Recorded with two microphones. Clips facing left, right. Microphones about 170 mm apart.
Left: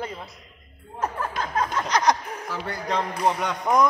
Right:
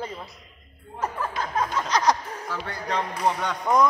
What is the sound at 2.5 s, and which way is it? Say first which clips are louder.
Speech: left 2 dB; 5° left (ahead or behind).